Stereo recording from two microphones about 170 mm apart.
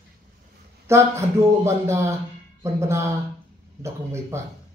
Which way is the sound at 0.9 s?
15° right (ahead or behind).